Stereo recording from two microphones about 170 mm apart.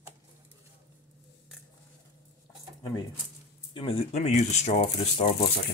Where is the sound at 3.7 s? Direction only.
30° left (ahead or behind).